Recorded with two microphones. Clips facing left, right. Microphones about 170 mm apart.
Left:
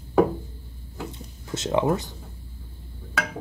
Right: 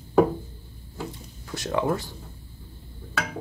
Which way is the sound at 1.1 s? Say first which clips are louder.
Left 3 dB; 20° left (ahead or behind).